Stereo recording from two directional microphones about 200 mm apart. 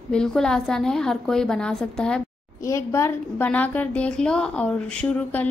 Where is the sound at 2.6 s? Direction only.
15° left (ahead or behind).